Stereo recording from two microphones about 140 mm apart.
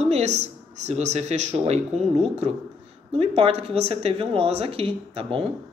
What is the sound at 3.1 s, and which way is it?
Speech, 45° right (ahead or behind).